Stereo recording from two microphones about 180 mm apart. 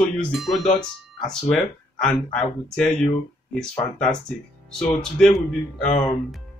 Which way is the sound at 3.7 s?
15° left (ahead or behind).